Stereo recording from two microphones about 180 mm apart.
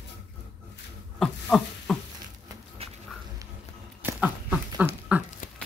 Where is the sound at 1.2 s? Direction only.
Centre (ahead or behind).